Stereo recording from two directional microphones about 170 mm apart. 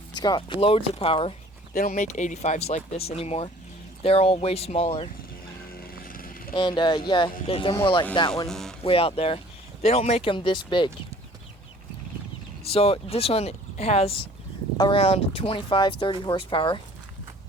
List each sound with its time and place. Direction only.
0.1 s speech: 25° left (ahead or behind)
1.7 s speech: 55° left (ahead or behind); by 5.0 s 35° left (ahead or behind)
5.7 s vehicle: 60° left (ahead or behind)
6.5 s speech: 30° left (ahead or behind)
8.4 s speech: 5° left (ahead or behind)
8.8 s speech: 35° left (ahead or behind)
12.7 s speech: 35° left (ahead or behind)